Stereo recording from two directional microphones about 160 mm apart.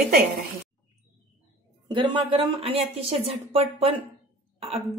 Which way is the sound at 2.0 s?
35° right (ahead or behind).